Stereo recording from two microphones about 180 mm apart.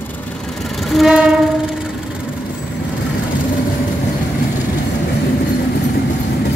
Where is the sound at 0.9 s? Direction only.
5° right (ahead or behind).